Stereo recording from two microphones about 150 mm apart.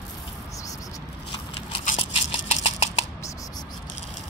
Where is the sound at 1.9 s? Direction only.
40° left (ahead or behind).